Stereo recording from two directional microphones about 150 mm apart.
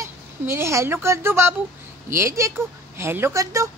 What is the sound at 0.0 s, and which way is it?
A woman's voice, 20° right (ahead or behind).